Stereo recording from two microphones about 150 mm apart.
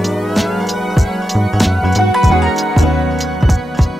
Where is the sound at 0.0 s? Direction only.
Centre (ahead or behind).